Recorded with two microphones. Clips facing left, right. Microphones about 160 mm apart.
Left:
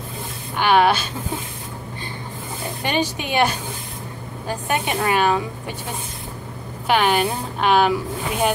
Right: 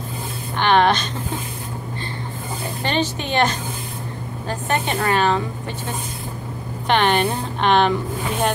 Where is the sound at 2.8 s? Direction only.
10° left (ahead or behind).